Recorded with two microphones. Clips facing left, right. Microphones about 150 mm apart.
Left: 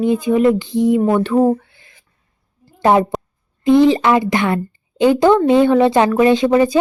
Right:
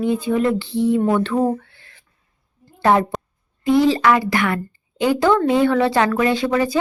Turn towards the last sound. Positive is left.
turn(degrees=20)  # may be behind; listen again after turning